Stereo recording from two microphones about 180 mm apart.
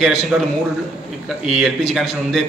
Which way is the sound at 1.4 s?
Centre (ahead or behind).